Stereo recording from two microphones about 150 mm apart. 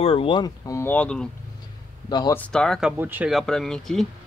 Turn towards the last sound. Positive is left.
turn(degrees=5)  # may be behind; listen again after turning